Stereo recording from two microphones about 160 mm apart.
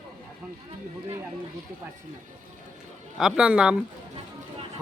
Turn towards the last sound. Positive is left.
turn(degrees=-5)  # may be behind; listen again after turning